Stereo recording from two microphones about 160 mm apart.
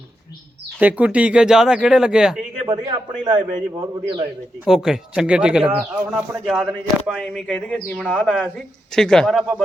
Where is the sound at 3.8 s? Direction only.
30° right (ahead or behind).